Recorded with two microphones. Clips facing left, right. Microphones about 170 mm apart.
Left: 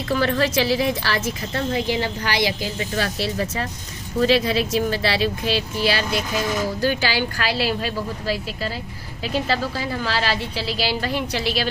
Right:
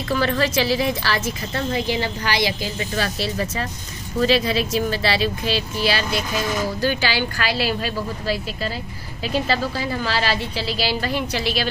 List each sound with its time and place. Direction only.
0.1 s a woman's voice: 50° left (ahead or behind); by 8.4 s 20° left (ahead or behind)
9.2 s speech: centre (ahead or behind)
10.5 s a woman's voice: 10° left (ahead or behind)
11.3 s a woman's voice: 35° left (ahead or behind)